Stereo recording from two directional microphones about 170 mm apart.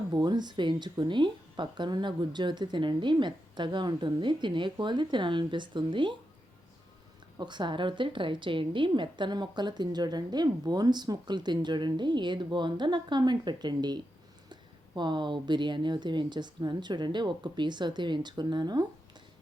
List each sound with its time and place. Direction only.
0.1 s a woman's voice: 25° right (ahead or behind)
7.3 s a woman's voice: 25° right (ahead or behind)